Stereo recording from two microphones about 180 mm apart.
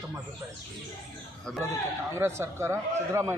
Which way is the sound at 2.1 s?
15° right (ahead or behind).